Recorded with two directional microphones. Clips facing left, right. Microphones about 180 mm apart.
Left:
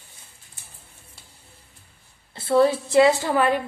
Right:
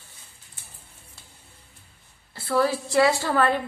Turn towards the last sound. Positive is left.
turn(degrees=15)  # may be behind; listen again after turning